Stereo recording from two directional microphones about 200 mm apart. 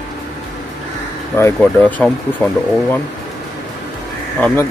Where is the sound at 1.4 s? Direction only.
10° left (ahead or behind).